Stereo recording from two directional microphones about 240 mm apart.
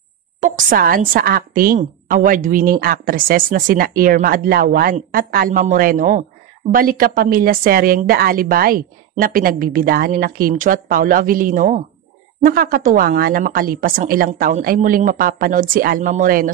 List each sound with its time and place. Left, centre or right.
0.4 s a woman's voice: right